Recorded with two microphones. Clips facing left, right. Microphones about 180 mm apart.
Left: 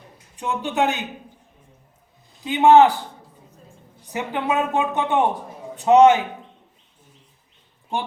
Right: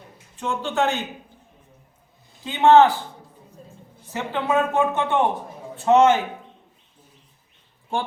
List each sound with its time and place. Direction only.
0.3 s speech: 15° left (ahead or behind)
2.4 s speech: 15° left (ahead or behind)
4.1 s a man's voice: 15° left (ahead or behind)